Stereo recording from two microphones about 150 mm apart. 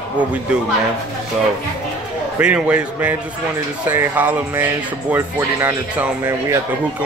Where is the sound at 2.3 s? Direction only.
10° right (ahead or behind).